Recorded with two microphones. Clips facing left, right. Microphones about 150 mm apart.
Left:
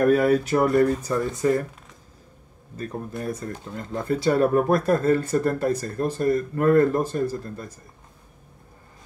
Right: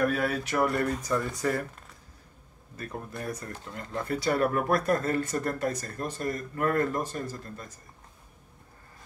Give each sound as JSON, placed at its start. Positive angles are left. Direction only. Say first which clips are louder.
{"t": 0.0, "sound": "speech", "louder": "left 9 dB", "side_deg": 45}
{"t": 1.1, "sound": "speech", "louder": "left 6 dB", "side_deg": 20}
{"t": 3.6, "sound": "speech", "louder": "left 5 dB", "side_deg": 25}